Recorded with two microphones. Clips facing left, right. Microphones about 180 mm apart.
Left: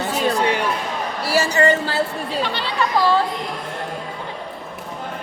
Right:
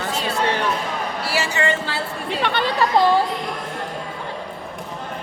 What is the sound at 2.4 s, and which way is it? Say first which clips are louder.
Chatter: right 5 dB; 55° right (ahead or behind).